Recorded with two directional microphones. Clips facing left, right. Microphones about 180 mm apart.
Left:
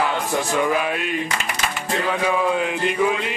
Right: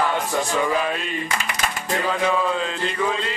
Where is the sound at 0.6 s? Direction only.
10° left (ahead or behind).